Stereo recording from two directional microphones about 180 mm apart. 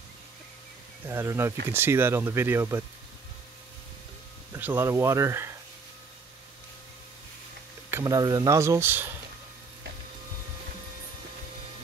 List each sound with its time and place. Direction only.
1.0 s speech: 15° right (ahead or behind)
4.5 s speech: 10° right (ahead or behind)
7.9 s speech: 20° right (ahead or behind)